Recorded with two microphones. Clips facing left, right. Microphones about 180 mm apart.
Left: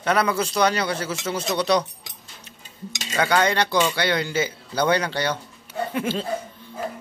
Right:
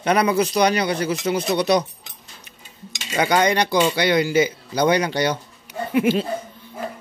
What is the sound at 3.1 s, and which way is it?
Speech, 15° right (ahead or behind).